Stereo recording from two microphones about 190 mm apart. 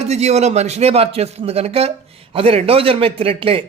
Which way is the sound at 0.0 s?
35° right (ahead or behind).